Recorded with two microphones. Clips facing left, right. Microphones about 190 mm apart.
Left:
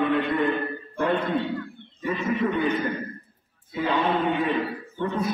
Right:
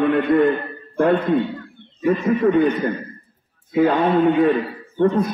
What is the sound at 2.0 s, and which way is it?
Speech, 50° right (ahead or behind).